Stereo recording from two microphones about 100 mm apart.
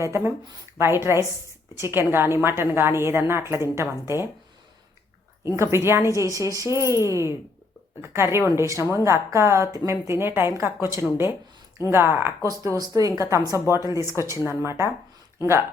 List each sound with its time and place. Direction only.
0.0 s a woman's voice: 30° right (ahead or behind)
5.5 s a woman's voice: 25° right (ahead or behind)
14.0 s speech: 30° left (ahead or behind)
14.3 s a woman's voice: 25° right (ahead or behind)